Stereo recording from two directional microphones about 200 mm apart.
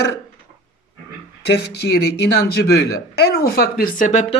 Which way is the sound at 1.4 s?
55° left (ahead or behind).